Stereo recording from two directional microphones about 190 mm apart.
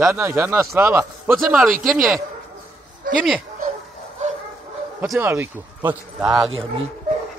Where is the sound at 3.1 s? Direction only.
45° right (ahead or behind).